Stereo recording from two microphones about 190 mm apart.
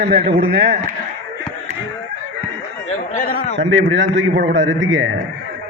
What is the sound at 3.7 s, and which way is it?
A man's voice, 80° right.